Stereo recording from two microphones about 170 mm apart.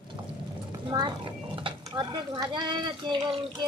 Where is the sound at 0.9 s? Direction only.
25° right (ahead or behind).